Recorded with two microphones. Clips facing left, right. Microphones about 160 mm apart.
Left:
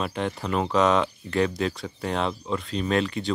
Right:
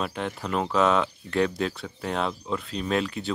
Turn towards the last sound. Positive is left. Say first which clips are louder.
# left 2 dB
turn(degrees=-5)  # may be behind; listen again after turning